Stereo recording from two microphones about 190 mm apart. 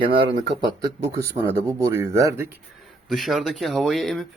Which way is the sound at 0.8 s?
15° right (ahead or behind).